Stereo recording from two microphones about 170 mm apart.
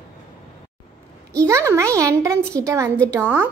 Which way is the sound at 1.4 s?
20° right (ahead or behind).